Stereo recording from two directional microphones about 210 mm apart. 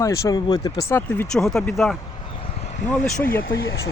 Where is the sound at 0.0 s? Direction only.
15° left (ahead or behind).